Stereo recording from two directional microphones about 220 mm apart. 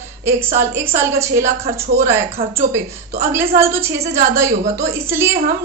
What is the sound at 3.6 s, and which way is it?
A woman's voice, 10° right (ahead or behind).